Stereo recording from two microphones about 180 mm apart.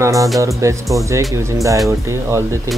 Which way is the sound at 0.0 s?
20° right (ahead or behind).